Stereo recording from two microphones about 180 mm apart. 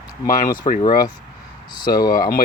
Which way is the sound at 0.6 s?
35° left (ahead or behind).